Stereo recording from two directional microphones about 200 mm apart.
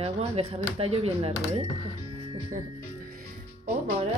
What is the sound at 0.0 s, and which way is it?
Speech, 30° right (ahead or behind).